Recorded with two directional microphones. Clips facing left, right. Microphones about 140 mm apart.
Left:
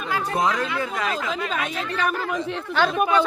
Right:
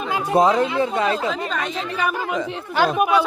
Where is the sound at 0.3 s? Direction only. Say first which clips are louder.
Right 9 dB; 30° right (ahead or behind).